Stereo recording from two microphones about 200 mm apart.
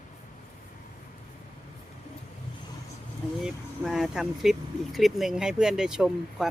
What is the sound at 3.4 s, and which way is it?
Speech, centre (ahead or behind).